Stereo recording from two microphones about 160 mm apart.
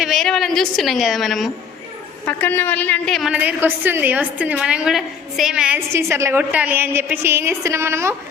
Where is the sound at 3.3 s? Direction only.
10° right (ahead or behind).